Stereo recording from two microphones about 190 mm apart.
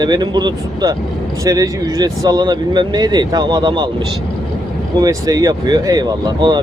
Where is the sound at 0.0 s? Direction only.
20° right (ahead or behind).